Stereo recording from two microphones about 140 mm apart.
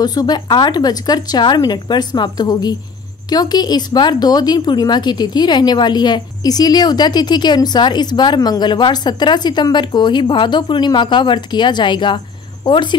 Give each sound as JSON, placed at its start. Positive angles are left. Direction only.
{"t": 0.0, "sound": "a woman's voice", "side_deg": 30}